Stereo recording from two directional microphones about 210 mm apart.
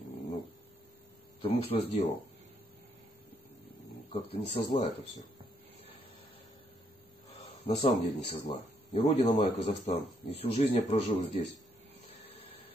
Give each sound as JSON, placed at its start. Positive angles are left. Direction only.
{"t": 1.4, "sound": "speech", "side_deg": 25}
{"t": 4.1, "sound": "speech", "side_deg": 25}
{"t": 7.4, "sound": "speech", "side_deg": 25}